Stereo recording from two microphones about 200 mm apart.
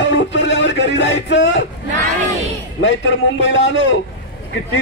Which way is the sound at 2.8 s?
65° left (ahead or behind).